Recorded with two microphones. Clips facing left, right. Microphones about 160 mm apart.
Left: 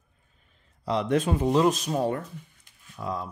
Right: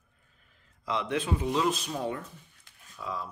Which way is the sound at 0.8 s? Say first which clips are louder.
Left 6 dB; 40° left (ahead or behind).